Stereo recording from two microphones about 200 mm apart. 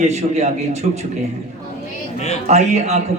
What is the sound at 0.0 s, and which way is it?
Speech, 35° right (ahead or behind).